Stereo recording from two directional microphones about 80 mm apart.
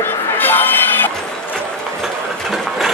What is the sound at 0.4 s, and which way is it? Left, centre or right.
Music, left.